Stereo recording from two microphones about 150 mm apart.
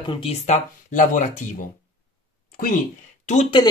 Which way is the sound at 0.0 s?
35° left (ahead or behind).